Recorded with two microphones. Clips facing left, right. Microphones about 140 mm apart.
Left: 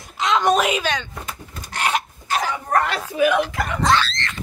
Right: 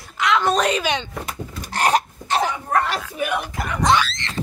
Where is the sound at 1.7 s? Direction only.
40° right (ahead or behind).